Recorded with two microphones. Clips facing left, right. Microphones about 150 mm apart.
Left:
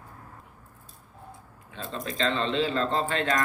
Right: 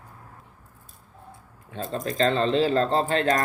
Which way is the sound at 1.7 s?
40° right (ahead or behind).